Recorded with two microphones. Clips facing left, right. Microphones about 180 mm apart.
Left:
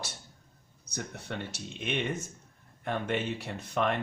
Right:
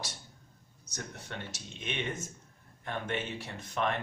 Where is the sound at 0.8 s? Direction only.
60° left (ahead or behind).